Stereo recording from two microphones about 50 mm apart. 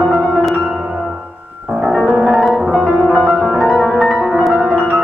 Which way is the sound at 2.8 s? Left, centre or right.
Centre.